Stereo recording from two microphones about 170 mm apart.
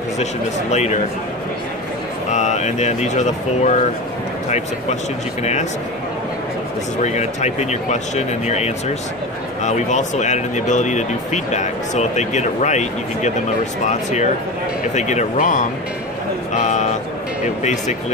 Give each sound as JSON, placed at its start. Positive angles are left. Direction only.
{"t": 0.2, "sound": "speech", "side_deg": 40}
{"t": 2.3, "sound": "speech", "side_deg": 45}
{"t": 7.0, "sound": "speech", "side_deg": 40}
{"t": 16.5, "sound": "a sound", "side_deg": 45}